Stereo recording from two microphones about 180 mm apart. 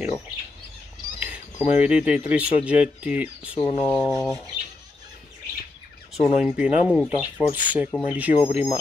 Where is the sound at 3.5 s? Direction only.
30° left (ahead or behind).